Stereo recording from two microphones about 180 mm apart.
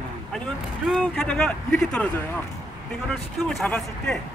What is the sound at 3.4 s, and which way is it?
Speech, 5° left (ahead or behind).